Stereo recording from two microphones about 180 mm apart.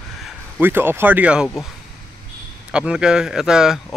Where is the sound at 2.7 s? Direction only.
5° right (ahead or behind).